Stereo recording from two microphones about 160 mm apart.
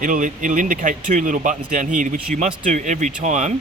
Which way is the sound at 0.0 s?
55° right (ahead or behind).